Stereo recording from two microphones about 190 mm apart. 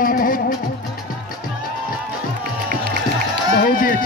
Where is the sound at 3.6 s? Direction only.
50° left (ahead or behind).